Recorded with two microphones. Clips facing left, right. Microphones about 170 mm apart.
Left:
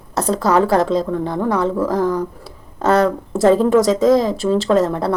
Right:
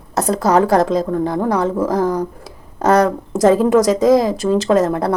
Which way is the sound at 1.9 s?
40° right (ahead or behind).